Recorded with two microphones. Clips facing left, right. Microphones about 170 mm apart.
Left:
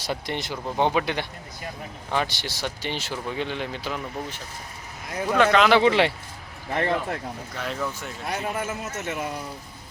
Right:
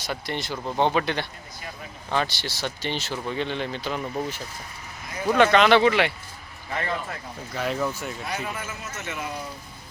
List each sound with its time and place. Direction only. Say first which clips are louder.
0.0 s speech: left 1 dB; 20° left (ahead or behind)
5.4 s speech: right 1 dB; centre (ahead or behind)
5.8 s speech: left 1 dB; 30° left (ahead or behind)
6.7 s a man's voice: left 5 dB; 55° left (ahead or behind)
7.5 s speech: right 5 dB; 5° right (ahead or behind)
8.3 s a man's voice: left 8 dB; 55° left (ahead or behind)